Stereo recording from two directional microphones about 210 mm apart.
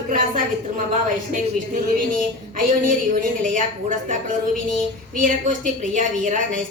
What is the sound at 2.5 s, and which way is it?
A woman's voice, 40° right (ahead or behind).